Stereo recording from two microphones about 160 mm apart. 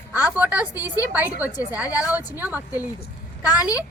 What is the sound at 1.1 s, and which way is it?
A woman's voice, 10° right (ahead or behind).